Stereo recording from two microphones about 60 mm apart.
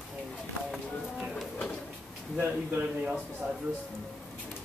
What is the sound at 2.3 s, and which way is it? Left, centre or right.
Speech, right.